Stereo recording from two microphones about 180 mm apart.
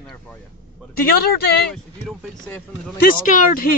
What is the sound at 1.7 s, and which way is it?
Speech, centre (ahead or behind).